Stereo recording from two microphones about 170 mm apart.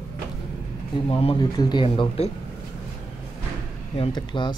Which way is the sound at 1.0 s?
30° left (ahead or behind).